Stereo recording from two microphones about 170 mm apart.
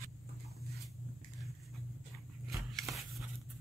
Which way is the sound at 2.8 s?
Centre (ahead or behind).